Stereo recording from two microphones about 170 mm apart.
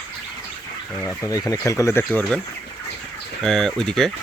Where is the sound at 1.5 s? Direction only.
20° left (ahead or behind).